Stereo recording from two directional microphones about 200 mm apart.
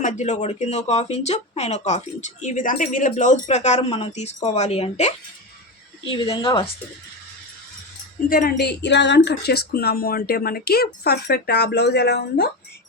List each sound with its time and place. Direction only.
0.0 s speech: 35° left (ahead or behind)
8.3 s speech: 45° left (ahead or behind)